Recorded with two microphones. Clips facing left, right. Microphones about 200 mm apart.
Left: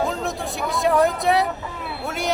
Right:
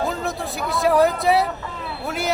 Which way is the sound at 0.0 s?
Centre (ahead or behind).